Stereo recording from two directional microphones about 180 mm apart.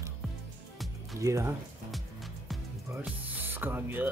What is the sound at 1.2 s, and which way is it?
Speech, 15° right (ahead or behind).